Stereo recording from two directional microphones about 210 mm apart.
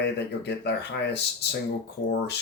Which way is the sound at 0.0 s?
55° left (ahead or behind).